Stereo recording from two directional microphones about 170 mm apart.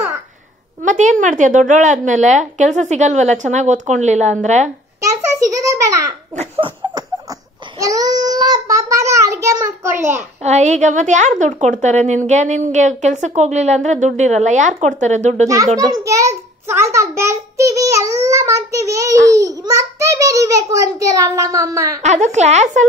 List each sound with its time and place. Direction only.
0.8 s a woman's voice: 45° right (ahead or behind)
5.0 s a child's voice: 20° right (ahead or behind)
6.3 s laughter: 35° right (ahead or behind)
7.8 s child singing: 20° right (ahead or behind)
10.4 s a woman's voice: 45° right (ahead or behind)
15.4 s a child's voice: 20° right (ahead or behind)
22.0 s a woman's voice: 45° right (ahead or behind)